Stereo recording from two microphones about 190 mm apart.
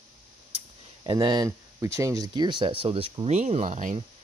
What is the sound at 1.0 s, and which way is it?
Speech, 25° right (ahead or behind).